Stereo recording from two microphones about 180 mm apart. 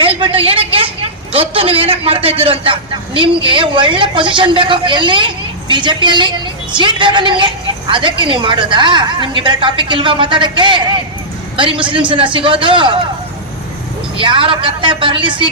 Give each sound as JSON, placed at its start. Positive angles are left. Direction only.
{"t": 0.0, "sound": "a sound", "side_deg": -30}
{"t": 1.3, "sound": "a man's voice", "side_deg": -30}
{"t": 14.2, "sound": "a woman's voice", "side_deg": -30}